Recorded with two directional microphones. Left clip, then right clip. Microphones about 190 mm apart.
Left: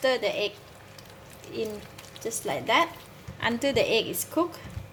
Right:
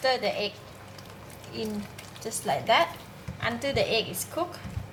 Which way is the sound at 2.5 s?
45° left (ahead or behind).